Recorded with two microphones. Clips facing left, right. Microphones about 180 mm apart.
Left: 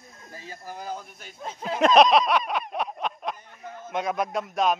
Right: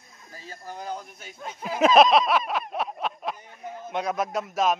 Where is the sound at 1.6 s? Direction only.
5° right (ahead or behind).